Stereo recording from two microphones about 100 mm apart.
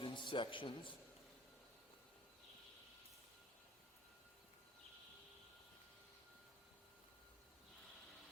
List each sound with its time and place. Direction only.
0.0 s a man's voice: 55° left (ahead or behind)